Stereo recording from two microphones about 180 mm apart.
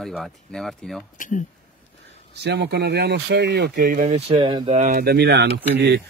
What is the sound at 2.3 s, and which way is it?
Speech, 70° right (ahead or behind).